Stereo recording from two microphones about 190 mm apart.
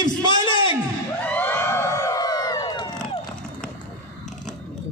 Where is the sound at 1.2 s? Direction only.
10° left (ahead or behind).